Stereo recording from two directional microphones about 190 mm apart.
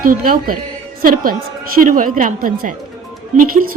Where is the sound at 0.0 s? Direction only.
45° right (ahead or behind).